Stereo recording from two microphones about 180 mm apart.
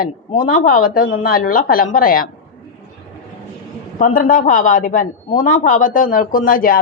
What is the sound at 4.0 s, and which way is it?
A woman's voice, 50° left (ahead or behind).